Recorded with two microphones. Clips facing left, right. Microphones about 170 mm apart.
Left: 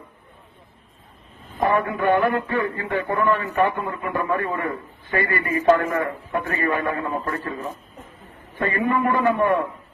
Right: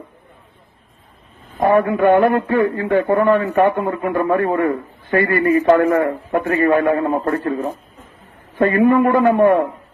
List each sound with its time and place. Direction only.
1.6 s a man's voice: 50° right (ahead or behind)
6.4 s a man's voice: 35° right (ahead or behind)